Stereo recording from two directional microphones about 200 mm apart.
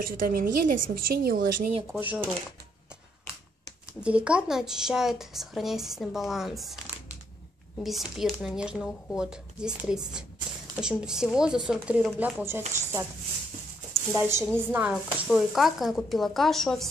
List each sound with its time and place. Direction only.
0.0 s a woman's voice: 45° right (ahead or behind)
1.9 s speech: 10° right (ahead or behind)
4.0 s speech: 5° right (ahead or behind)
7.8 s speech: centre (ahead or behind)
14.1 s speech: 10° right (ahead or behind)